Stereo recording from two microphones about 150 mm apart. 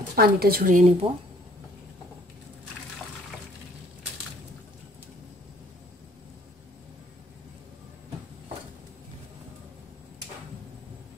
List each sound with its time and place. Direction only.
0.1 s a woman's voice: 90° right; by 0.9 s 60° right (ahead or behind)